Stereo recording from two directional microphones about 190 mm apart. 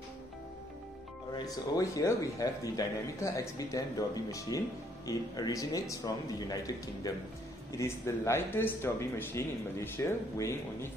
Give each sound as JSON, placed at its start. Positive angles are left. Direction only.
{"t": 1.3, "sound": "speech", "side_deg": 20}